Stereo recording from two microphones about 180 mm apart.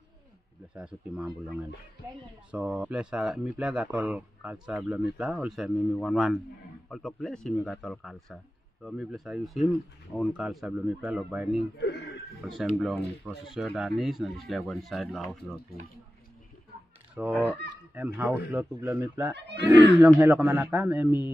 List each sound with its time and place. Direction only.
0.7 s speech: 5° right (ahead or behind)
11.8 s speech: 70° left (ahead or behind)
12.4 s speech: centre (ahead or behind)
13.2 s speech: 5° right (ahead or behind)
17.3 s speech: 10° left (ahead or behind)
17.9 s speech: 10° right (ahead or behind)
19.3 s speech: 70° right (ahead or behind)
19.6 s speech: 20° right (ahead or behind)